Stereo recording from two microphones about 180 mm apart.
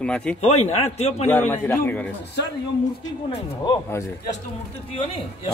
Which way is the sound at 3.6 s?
20° left (ahead or behind).